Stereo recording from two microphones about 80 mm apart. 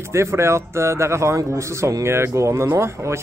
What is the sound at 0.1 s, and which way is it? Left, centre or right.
Speech, right.